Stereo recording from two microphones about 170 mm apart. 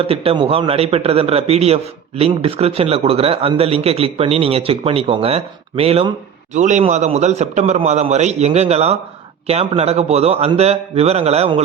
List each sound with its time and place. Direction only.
0.0 s a man's voice: 35° right (ahead or behind)